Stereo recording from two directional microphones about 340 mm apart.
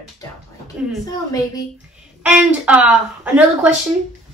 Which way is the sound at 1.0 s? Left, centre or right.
Centre.